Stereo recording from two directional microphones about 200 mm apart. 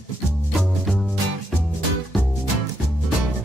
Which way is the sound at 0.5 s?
Centre (ahead or behind).